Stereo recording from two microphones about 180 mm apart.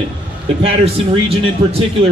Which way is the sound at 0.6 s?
35° right (ahead or behind).